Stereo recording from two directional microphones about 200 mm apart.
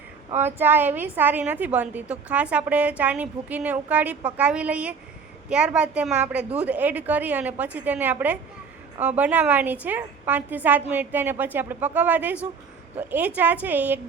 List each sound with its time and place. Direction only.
0.3 s a woman's voice: 10° right (ahead or behind)